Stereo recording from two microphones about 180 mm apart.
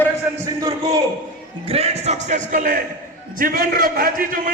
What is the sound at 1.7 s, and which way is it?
A man's voice, 35° right (ahead or behind).